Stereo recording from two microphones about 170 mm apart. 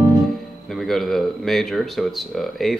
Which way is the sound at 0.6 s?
Centre (ahead or behind).